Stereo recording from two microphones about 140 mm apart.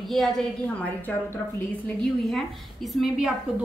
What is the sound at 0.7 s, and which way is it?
A woman's voice, 10° left (ahead or behind).